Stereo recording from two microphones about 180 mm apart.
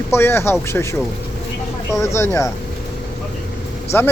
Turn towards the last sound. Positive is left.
turn(degrees=10)  # may be behind; listen again after turning